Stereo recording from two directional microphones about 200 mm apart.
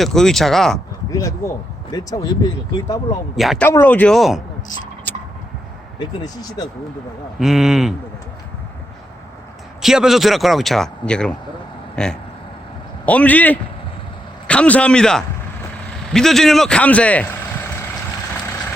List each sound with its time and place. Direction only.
0.0 s speech: centre (ahead or behind)
1.1 s speech: 15° left (ahead or behind)
3.3 s speech: centre (ahead or behind)
3.7 s speech: 10° left (ahead or behind)
5.1 s vehicle: 10° left (ahead or behind)
6.0 s speech: 20° left (ahead or behind)
7.3 s speech: centre (ahead or behind)
9.8 s speech: centre (ahead or behind)